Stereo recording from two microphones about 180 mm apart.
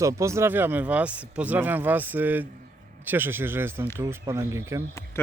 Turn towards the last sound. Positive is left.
turn(degrees=15)  # may be behind; listen again after turning